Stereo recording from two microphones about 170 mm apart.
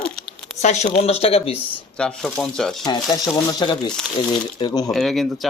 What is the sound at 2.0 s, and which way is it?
Speech, 5° left (ahead or behind).